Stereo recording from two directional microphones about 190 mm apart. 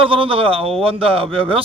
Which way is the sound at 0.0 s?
30° right (ahead or behind).